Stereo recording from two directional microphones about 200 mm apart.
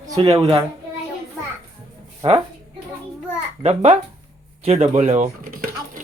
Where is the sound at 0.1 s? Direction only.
25° right (ahead or behind).